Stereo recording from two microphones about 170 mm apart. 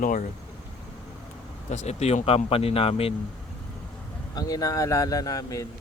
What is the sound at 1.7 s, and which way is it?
Speech, 40° left (ahead or behind).